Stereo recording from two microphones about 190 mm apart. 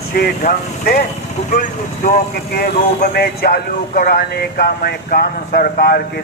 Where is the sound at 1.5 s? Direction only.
45° left (ahead or behind).